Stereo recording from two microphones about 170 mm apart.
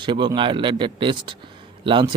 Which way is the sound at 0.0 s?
25° right (ahead or behind).